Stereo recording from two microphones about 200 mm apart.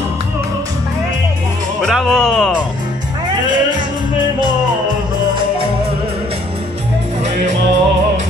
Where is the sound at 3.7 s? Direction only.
20° right (ahead or behind).